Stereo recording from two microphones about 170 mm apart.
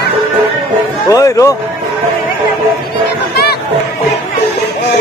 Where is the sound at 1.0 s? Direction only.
20° left (ahead or behind).